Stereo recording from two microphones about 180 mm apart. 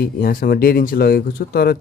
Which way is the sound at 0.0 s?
55° left (ahead or behind).